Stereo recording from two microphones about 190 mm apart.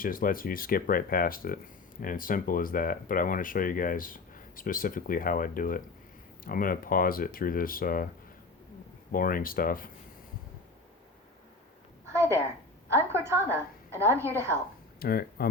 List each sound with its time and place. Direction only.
0.0 s speech: 50° left (ahead or behind)
9.1 s speech: 50° left (ahead or behind)
12.0 s a sound: 15° right (ahead or behind)
12.9 s a woman's voice: 15° right (ahead or behind)
14.9 s speech: 50° left (ahead or behind)